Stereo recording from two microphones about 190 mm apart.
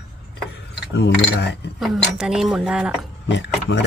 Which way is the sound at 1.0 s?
65° left (ahead or behind).